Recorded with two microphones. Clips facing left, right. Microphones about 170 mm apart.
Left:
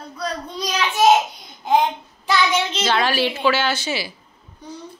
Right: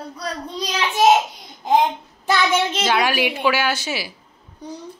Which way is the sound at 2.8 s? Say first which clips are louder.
Even; 10° right (ahead or behind).